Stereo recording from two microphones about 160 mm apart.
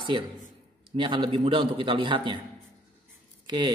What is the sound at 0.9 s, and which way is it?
A woman's voice, 30° right (ahead or behind).